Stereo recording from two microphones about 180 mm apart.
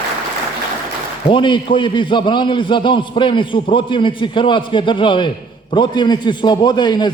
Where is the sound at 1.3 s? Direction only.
25° left (ahead or behind).